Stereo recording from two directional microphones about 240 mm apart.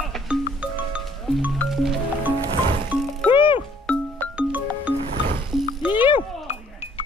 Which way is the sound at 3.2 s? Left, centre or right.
Left.